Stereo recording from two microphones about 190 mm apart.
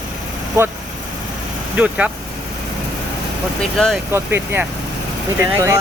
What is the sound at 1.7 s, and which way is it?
Speech, 5° right (ahead or behind).